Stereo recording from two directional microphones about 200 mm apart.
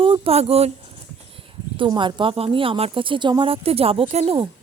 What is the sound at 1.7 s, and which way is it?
Speech, 25° right (ahead or behind).